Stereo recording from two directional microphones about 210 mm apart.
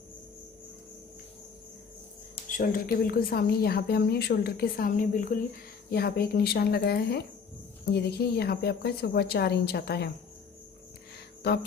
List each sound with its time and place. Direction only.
2.5 s speech: 45° left (ahead or behind)